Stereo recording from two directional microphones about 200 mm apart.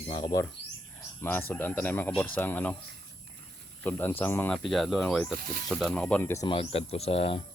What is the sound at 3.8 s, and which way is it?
Speech, 10° left (ahead or behind).